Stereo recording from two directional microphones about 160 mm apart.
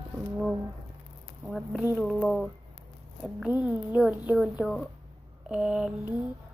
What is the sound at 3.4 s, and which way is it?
A woman's voice, 5° right (ahead or behind).